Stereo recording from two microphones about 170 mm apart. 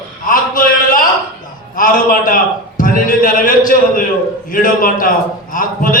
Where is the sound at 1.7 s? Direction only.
55° left (ahead or behind).